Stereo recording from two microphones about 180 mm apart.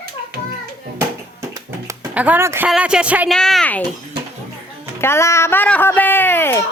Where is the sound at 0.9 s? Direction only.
15° right (ahead or behind).